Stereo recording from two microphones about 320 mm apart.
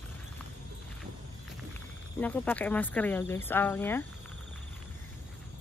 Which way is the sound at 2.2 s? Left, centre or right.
Centre.